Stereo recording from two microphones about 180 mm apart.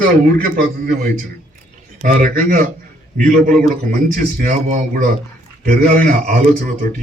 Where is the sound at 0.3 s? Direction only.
55° right (ahead or behind).